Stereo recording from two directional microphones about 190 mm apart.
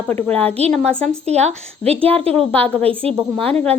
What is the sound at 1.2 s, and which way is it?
Speech, 35° right (ahead or behind).